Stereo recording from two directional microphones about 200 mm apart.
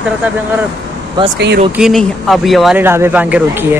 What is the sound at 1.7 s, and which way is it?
Speech, centre (ahead or behind).